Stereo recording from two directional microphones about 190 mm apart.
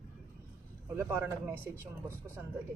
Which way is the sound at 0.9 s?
10° right (ahead or behind).